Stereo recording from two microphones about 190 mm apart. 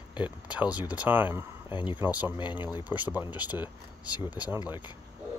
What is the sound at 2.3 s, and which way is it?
Speech, 25° left (ahead or behind).